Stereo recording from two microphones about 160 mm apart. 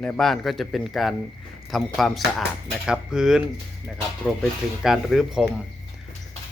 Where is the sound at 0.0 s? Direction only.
5° left (ahead or behind).